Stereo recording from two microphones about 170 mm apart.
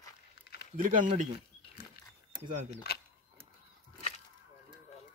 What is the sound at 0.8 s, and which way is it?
Speech, 50° right (ahead or behind).